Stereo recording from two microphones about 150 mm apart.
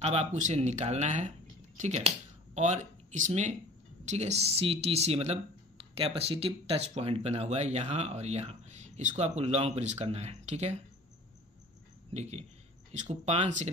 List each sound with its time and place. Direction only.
0.0 s speech: 45° right (ahead or behind)
12.1 s speech: 45° right (ahead or behind)